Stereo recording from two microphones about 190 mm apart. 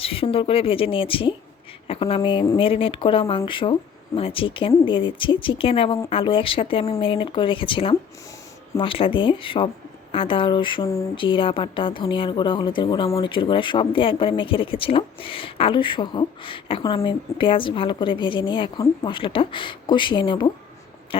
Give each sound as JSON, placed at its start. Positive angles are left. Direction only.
{"t": 0.0, "sound": "speech", "side_deg": 30}